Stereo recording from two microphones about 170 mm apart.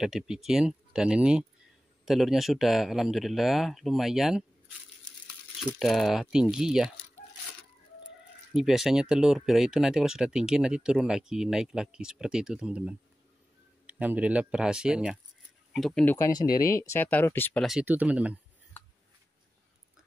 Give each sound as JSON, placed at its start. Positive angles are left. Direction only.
{"t": 0.0, "sound": "speech", "side_deg": 0}
{"t": 8.5, "sound": "speech", "side_deg": 0}
{"t": 16.2, "sound": "speech", "side_deg": 20}
{"t": 17.6, "sound": "speech", "side_deg": -5}